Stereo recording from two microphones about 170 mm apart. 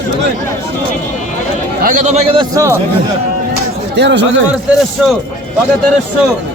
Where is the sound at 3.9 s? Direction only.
90° right.